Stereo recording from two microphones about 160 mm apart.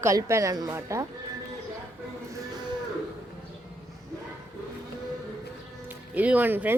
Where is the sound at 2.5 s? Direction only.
25° right (ahead or behind).